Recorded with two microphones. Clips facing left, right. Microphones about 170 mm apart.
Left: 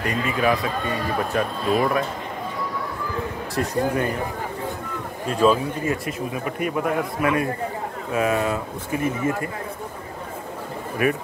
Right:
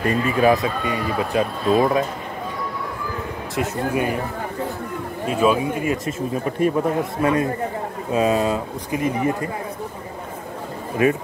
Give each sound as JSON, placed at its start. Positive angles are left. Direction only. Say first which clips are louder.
{"t": 0.4, "sound": "speech", "louder": "right 4 dB", "side_deg": -25}
{"t": 3.5, "sound": "speech", "louder": "even", "side_deg": -5}
{"t": 5.3, "sound": "speech", "louder": "even", "side_deg": -10}
{"t": 6.3, "sound": "speech", "louder": "right 7 dB", "side_deg": -35}
{"t": 11.0, "sound": "speech", "louder": "right 4 dB", "side_deg": -25}